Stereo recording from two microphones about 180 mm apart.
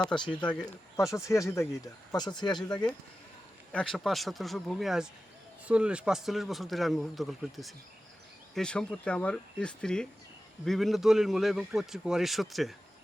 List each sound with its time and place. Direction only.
0.3 s speech: 5° left (ahead or behind)
1.1 s speech: 15° left (ahead or behind)
3.7 s speech: 5° left (ahead or behind)